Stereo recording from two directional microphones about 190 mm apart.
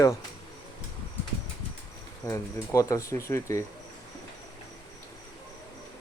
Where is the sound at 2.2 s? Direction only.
15° left (ahead or behind).